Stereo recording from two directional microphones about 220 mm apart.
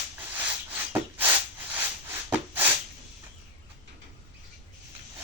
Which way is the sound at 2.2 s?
10° right (ahead or behind).